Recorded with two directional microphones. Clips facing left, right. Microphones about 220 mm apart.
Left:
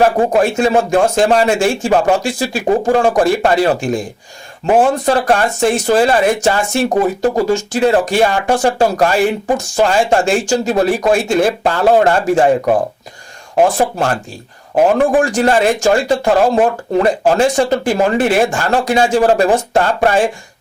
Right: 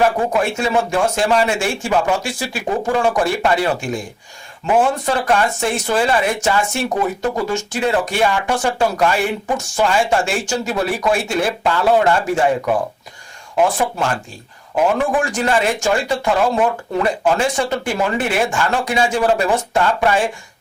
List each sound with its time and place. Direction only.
0.0 s speech: 35° left (ahead or behind)
0.6 s speech: 50° left (ahead or behind)
0.9 s speech: 40° left (ahead or behind)
10.4 s speech: 50° left (ahead or behind)
15.6 s speech: 45° left (ahead or behind)
16.6 s speech: 35° left (ahead or behind)
17.6 s speech: 50° left (ahead or behind)